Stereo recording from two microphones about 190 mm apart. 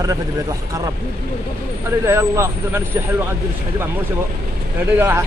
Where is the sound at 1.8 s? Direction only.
15° right (ahead or behind).